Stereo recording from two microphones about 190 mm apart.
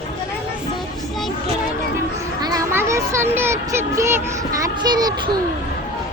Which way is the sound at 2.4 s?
20° right (ahead or behind).